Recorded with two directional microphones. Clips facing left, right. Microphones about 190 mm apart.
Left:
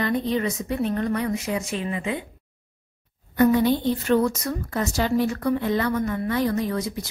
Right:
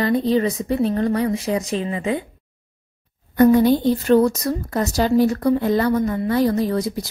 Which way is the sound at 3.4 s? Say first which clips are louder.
Right 5 dB; 45° right (ahead or behind).